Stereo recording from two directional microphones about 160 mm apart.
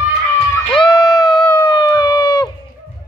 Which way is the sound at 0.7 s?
25° left (ahead or behind).